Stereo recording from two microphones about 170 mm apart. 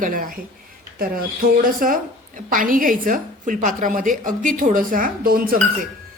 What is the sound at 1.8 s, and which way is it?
A woman's voice, 55° right (ahead or behind).